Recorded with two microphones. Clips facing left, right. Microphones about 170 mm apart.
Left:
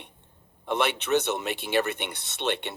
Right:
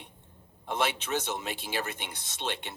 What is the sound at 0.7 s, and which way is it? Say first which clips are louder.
Speech: left 6 dB; 65° left (ahead or behind).